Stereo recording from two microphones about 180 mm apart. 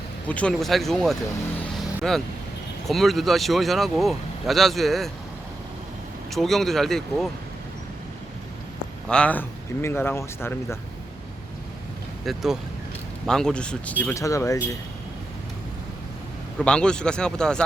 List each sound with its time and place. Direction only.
0.3 s speech: 5° left (ahead or behind)
1.7 s vehicle: centre (ahead or behind)
2.9 s speech: centre (ahead or behind)
6.3 s speech: centre (ahead or behind)
9.0 s speech: 5° left (ahead or behind)
12.2 s speech: centre (ahead or behind); by 14.8 s 15° left (ahead or behind)
16.6 s speech: 5° left (ahead or behind)